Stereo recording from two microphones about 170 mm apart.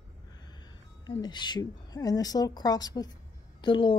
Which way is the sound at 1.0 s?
25° left (ahead or behind).